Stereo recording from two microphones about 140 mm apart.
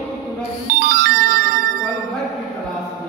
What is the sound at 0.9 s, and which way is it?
Music, 90° right.